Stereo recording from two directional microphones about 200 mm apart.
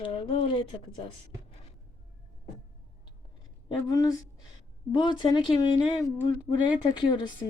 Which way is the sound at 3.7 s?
20° left (ahead or behind).